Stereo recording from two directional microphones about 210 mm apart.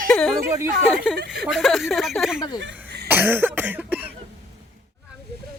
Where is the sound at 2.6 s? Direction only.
50° right (ahead or behind).